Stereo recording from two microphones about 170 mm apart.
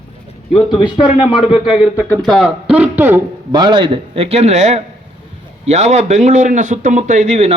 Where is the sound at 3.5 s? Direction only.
25° right (ahead or behind).